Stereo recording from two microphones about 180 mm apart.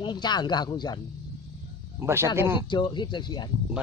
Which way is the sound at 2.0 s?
15° right (ahead or behind).